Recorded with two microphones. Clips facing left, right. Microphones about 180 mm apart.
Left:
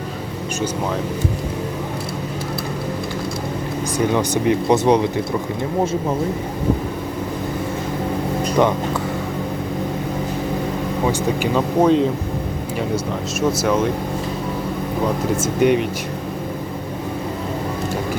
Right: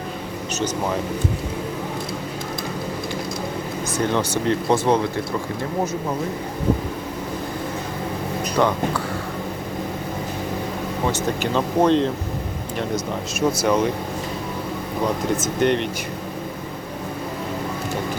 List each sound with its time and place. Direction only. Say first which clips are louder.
3.9 s speech: left 3 dB; 10° left (ahead or behind)
8.5 s speech: left 2 dB; 20° left (ahead or behind)
11.0 s speech: left 3 dB; 10° left (ahead or behind)
13.5 s speech: left 1 dB; 5° left (ahead or behind)
15.4 s speech: left 7 dB; 10° left (ahead or behind)